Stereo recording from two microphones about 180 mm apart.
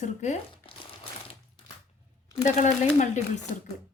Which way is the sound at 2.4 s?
40° left (ahead or behind).